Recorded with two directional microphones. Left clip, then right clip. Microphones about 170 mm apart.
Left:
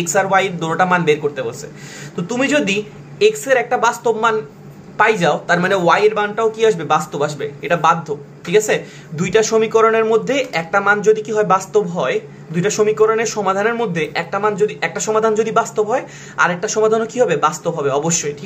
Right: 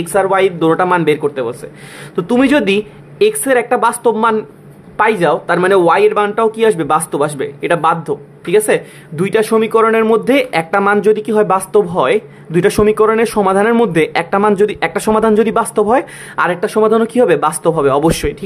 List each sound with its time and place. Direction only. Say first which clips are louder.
0.0 s a man's voice: right 3 dB; 40° right (ahead or behind); by 18.4 s 60° right (ahead or behind)